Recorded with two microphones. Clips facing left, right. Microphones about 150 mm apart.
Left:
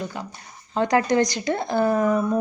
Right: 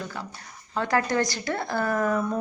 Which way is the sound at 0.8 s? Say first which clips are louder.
Left 5 dB; 20° left (ahead or behind).